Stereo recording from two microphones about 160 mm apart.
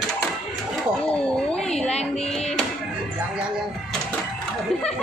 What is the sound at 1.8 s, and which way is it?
Music, 40° left (ahead or behind).